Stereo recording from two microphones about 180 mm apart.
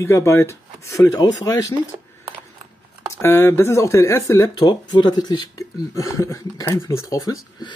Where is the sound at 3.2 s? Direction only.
15° left (ahead or behind).